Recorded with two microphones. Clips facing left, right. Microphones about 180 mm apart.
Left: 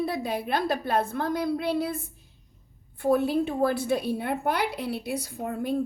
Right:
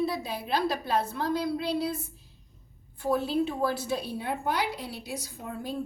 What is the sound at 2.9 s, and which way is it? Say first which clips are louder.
A woman's voice: left 4 dB; 60° left (ahead or behind).